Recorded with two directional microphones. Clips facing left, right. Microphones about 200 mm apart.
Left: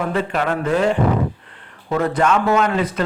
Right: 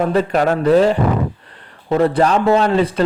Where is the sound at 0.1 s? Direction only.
40° right (ahead or behind).